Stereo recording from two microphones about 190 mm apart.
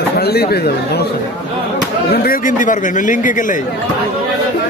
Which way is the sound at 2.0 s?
50° left (ahead or behind).